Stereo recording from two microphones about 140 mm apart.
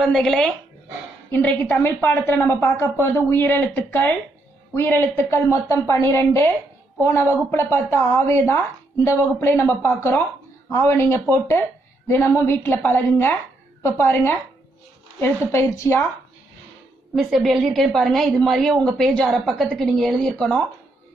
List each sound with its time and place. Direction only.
0.0 s a woman's voice: 5° left (ahead or behind)
17.1 s a woman's voice: centre (ahead or behind)